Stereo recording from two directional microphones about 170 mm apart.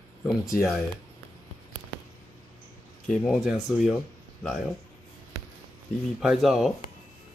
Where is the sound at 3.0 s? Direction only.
Centre (ahead or behind).